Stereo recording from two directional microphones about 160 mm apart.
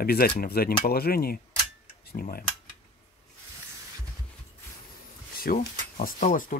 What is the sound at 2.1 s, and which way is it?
Cutlery, 45° left (ahead or behind).